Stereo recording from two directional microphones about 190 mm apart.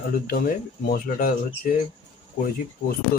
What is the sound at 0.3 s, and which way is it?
Speech, 45° left (ahead or behind).